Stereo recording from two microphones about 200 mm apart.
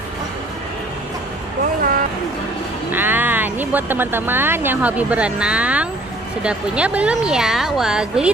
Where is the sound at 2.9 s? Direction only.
10° right (ahead or behind).